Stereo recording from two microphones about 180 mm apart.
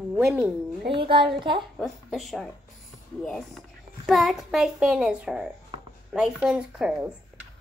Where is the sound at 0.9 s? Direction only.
25° right (ahead or behind).